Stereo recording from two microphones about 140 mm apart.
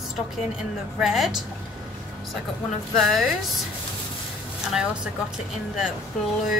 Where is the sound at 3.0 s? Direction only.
Centre (ahead or behind).